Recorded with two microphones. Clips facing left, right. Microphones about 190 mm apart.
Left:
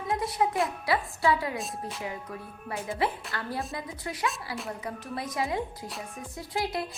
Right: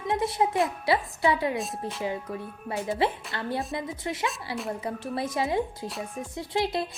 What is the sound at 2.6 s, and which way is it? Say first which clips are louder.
A woman's voice: right 3 dB; 25° right (ahead or behind).